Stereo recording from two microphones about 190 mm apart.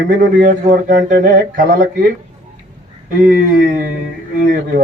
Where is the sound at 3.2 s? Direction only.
45° right (ahead or behind).